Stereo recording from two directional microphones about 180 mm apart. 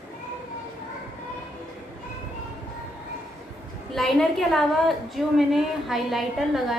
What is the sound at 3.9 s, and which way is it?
A woman's voice, centre (ahead or behind).